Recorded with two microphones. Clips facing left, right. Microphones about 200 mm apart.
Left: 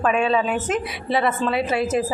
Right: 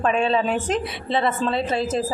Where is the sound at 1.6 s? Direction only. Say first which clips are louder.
Left 2 dB; 10° left (ahead or behind).